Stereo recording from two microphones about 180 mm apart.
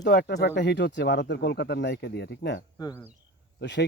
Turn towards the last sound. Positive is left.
turn(degrees=75)  # may be behind; listen again after turning